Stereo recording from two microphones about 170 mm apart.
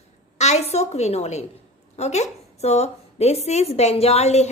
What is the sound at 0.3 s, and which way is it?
A woman's voice, 40° left (ahead or behind).